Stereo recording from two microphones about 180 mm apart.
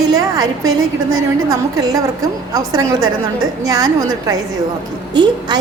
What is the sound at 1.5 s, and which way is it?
A woman's voice, 20° right (ahead or behind).